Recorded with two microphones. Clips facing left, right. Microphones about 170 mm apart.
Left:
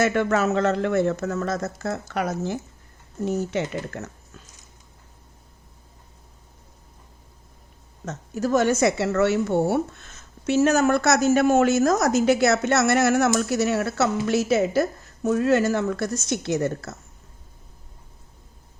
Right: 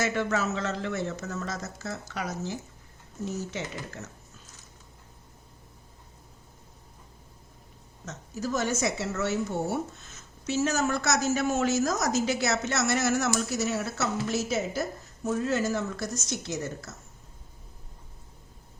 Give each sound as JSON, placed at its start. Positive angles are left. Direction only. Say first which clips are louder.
{"t": 0.0, "sound": "speech", "louder": "left 7 dB", "side_deg": 55}
{"t": 8.0, "sound": "speech", "louder": "left 7 dB", "side_deg": 60}